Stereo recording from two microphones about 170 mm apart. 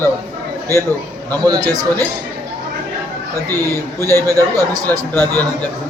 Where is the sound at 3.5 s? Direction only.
20° right (ahead or behind).